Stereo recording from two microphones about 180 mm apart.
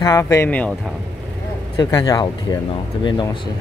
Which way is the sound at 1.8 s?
20° left (ahead or behind).